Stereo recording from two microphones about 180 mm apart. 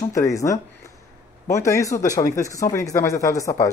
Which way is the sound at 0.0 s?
15° left (ahead or behind).